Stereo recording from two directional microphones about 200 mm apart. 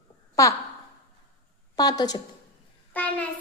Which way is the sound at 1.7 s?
20° left (ahead or behind).